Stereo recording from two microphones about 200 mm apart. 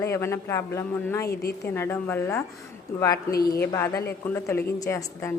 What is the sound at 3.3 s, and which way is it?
Speech, 50° left (ahead or behind).